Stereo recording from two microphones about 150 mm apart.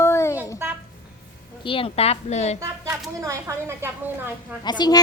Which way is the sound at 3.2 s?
20° right (ahead or behind).